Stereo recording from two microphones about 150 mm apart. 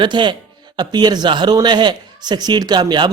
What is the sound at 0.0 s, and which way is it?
A man's voice, 30° right (ahead or behind).